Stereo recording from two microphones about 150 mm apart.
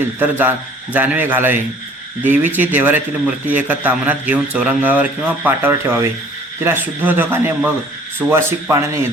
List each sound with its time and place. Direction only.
0.0 s a man's voice: 10° right (ahead or behind)